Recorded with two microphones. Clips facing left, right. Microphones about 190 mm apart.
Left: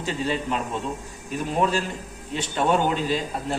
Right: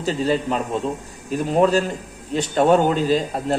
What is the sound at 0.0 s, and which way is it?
A man's voice, 40° right (ahead or behind).